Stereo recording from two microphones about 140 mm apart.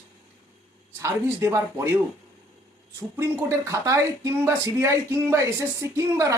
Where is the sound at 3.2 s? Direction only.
20° right (ahead or behind).